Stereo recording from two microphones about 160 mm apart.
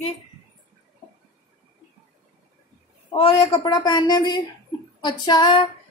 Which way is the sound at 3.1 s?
35° left (ahead or behind).